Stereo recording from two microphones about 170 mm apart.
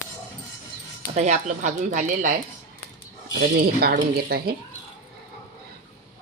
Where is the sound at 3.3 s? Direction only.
70° right (ahead or behind).